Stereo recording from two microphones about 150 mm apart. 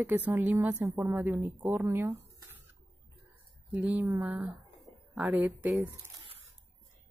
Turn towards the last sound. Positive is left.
turn(degrees=-10)  # may be behind; listen again after turning